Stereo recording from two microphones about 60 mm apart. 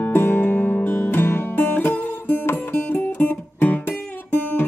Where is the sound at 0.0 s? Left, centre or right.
Left.